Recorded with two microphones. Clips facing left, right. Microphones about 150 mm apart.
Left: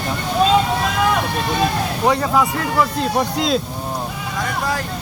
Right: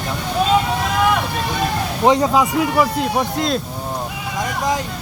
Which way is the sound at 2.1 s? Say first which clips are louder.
Right 3 dB; 20° right (ahead or behind).